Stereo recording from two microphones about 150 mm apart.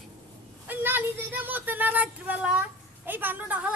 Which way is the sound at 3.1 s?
15° right (ahead or behind).